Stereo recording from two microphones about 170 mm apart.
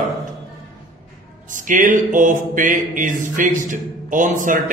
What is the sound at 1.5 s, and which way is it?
A man's voice, 50° right (ahead or behind).